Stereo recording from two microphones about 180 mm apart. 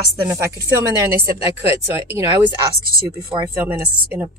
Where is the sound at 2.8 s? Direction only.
55° right (ahead or behind).